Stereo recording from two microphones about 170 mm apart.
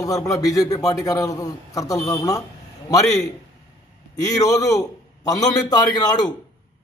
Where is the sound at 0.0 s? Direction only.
20° left (ahead or behind).